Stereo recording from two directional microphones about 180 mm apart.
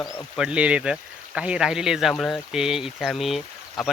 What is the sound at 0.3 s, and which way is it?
Speech, 5° right (ahead or behind).